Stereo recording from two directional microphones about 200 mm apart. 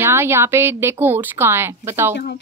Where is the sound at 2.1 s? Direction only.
55° left (ahead or behind).